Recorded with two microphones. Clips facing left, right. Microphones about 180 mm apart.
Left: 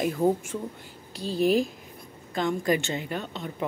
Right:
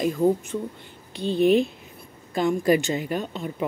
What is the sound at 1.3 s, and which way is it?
Speech, 35° left (ahead or behind).